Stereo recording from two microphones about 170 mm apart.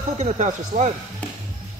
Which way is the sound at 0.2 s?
45° right (ahead or behind).